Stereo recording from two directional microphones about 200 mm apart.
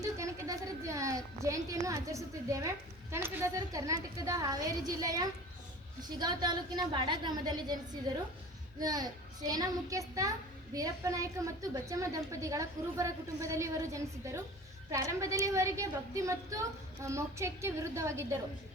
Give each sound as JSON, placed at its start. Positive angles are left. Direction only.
{"t": 0.0, "sound": "a woman's voice", "side_deg": -15}